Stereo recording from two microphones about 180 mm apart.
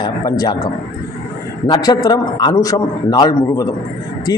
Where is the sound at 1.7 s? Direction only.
20° left (ahead or behind).